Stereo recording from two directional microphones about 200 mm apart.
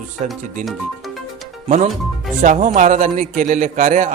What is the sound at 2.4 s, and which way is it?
A man's voice, 40° right (ahead or behind).